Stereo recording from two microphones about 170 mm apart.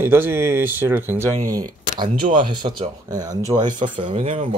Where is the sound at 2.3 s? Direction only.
30° right (ahead or behind).